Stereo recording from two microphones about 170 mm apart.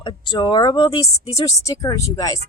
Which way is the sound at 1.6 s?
20° left (ahead or behind).